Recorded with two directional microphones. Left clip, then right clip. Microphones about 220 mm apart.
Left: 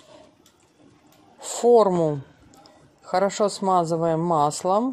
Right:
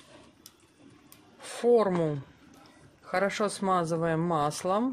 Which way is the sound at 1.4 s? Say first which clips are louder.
Left 7 dB; 20° left (ahead or behind).